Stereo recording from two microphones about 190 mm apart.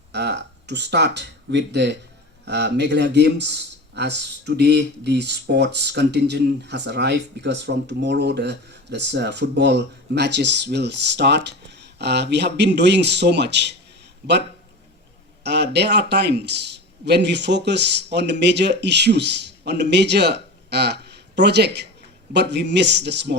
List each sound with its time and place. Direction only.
0.1 s a man's voice: 60° right (ahead or behind)
15.4 s a man's voice: 60° right (ahead or behind)